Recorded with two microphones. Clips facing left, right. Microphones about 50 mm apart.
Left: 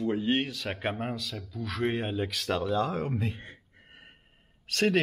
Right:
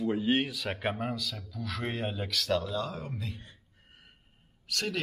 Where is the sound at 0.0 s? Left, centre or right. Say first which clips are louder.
Even; centre.